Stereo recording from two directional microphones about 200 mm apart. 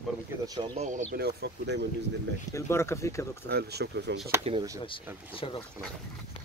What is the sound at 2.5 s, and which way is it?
Speech, 15° left (ahead or behind).